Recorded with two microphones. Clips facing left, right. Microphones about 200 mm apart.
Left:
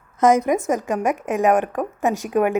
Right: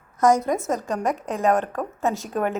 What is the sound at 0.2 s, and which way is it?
A woman's voice, 20° left (ahead or behind).